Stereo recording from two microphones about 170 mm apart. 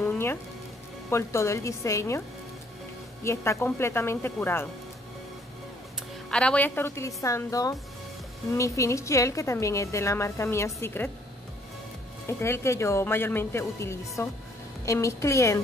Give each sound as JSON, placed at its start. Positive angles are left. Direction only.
{"t": 0.0, "sound": "music", "side_deg": 15}
{"t": 1.1, "sound": "a woman's voice", "side_deg": 15}
{"t": 3.3, "sound": "a woman's voice", "side_deg": 15}
{"t": 6.3, "sound": "a woman's voice", "side_deg": 5}
{"t": 12.3, "sound": "a woman's voice", "side_deg": 15}